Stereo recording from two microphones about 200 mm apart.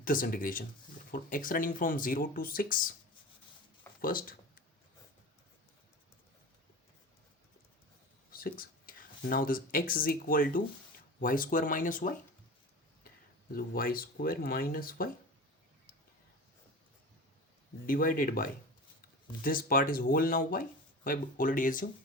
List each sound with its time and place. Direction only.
0.0 s speech: 45° left (ahead or behind)
4.0 s a sound: 45° left (ahead or behind)
8.3 s speech: 45° left (ahead or behind)
13.5 s speech: 45° left (ahead or behind)
17.8 s speech: 45° left (ahead or behind)